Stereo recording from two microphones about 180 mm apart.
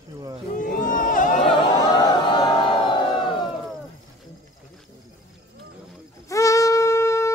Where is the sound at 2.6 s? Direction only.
25° left (ahead or behind).